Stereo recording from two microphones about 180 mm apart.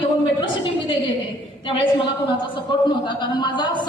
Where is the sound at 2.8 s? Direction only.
25° left (ahead or behind).